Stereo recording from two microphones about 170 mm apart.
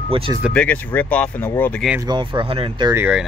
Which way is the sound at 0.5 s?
5° left (ahead or behind).